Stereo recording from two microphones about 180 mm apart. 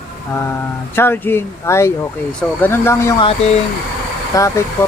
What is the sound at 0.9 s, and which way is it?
Speech, 10° left (ahead or behind).